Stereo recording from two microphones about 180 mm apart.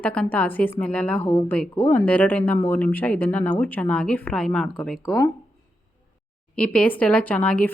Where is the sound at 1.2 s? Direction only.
30° left (ahead or behind).